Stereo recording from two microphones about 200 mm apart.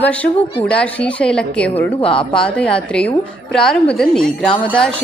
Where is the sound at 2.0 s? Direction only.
25° left (ahead or behind).